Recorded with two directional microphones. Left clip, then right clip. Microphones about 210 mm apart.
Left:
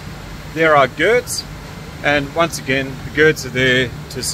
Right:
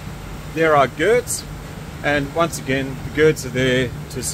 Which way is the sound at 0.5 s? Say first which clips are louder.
Left 3 dB; 15° left (ahead or behind).